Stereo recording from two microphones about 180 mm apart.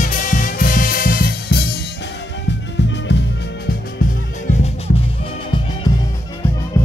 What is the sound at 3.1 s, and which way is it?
Music, 70° left (ahead or behind).